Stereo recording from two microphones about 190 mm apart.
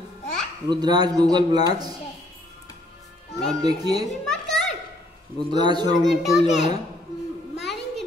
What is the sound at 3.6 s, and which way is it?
Speech, 20° right (ahead or behind).